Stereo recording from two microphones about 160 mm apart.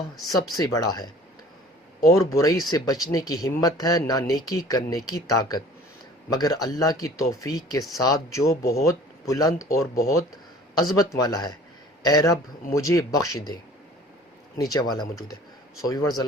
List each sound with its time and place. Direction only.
0.5 s speech: 20° left (ahead or behind)
14.6 s speech: 25° left (ahead or behind)